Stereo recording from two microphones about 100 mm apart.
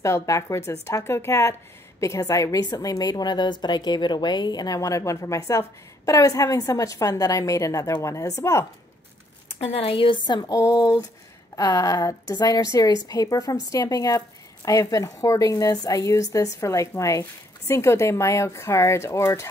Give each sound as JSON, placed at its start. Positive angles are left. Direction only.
{"t": 0.0, "sound": "a woman's voice", "side_deg": 30}
{"t": 9.5, "sound": "a woman's voice", "side_deg": 85}
{"t": 10.6, "sound": "a woman's voice", "side_deg": 35}